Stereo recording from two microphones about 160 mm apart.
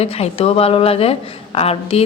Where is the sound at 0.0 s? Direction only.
40° left (ahead or behind).